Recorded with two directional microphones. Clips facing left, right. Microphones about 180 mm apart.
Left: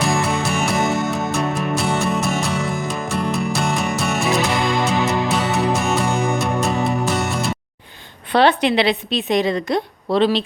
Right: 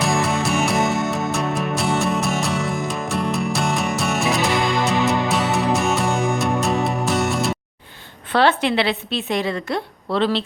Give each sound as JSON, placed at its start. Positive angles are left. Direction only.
{"t": 0.0, "sound": "music", "side_deg": 0}
{"t": 8.3, "sound": "a woman's voice", "side_deg": 15}